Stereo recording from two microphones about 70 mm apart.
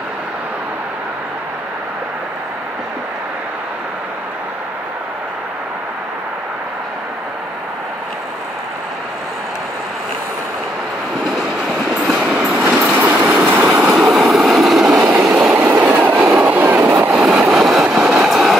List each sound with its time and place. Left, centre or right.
12.2 s train: centre
12.6 s train: right
13.9 s train: centre
15.5 s train: right
17.2 s train: centre